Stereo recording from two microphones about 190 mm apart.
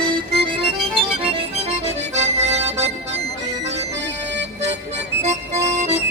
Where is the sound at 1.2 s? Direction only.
30° right (ahead or behind).